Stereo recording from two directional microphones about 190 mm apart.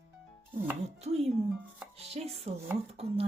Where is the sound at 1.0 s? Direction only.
35° right (ahead or behind).